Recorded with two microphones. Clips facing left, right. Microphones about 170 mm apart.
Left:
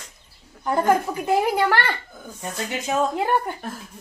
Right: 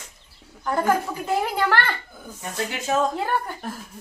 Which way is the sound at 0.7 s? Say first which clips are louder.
Left 2 dB; 15° left (ahead or behind).